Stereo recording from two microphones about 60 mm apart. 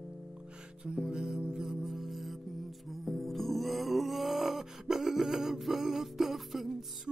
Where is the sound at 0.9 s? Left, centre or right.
Centre.